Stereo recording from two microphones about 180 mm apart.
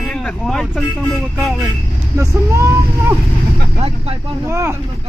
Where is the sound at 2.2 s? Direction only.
15° right (ahead or behind).